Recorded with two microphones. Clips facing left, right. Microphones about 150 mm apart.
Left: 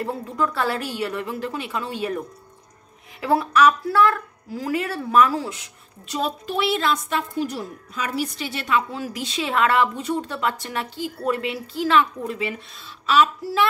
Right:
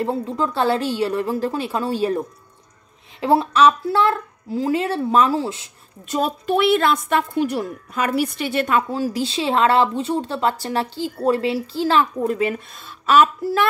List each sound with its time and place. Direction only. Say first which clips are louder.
0.0 s a woman's voice: right 3 dB; 25° right (ahead or behind)
6.0 s a woman's voice: right 5 dB; 50° right (ahead or behind)
9.0 s speech: right 6 dB; 30° right (ahead or behind)
12.2 s a woman's voice: right 7 dB; 45° right (ahead or behind)